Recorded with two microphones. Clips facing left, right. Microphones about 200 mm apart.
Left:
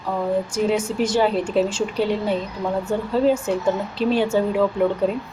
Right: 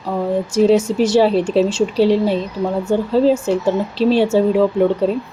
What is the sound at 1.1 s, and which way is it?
A woman's voice, 30° right (ahead or behind).